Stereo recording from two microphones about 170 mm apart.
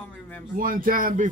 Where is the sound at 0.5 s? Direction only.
55° right (ahead or behind).